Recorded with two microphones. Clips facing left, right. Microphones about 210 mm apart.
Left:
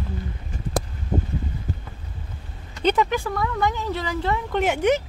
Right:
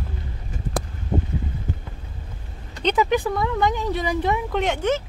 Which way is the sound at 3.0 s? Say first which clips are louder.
Right 4 dB; 15° right (ahead or behind).